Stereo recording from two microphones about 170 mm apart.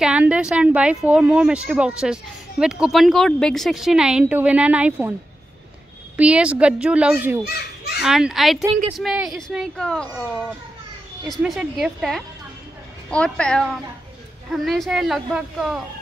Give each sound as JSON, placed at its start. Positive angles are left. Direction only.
{"t": 0.0, "sound": "a woman's voice", "side_deg": -5}
{"t": 6.1, "sound": "a woman's voice", "side_deg": -5}
{"t": 7.4, "sound": "children playing", "side_deg": 70}
{"t": 8.0, "sound": "speech", "side_deg": -5}
{"t": 11.2, "sound": "speech", "side_deg": 0}